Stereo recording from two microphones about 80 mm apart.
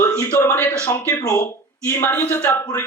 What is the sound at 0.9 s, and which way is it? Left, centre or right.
A man's voice, left.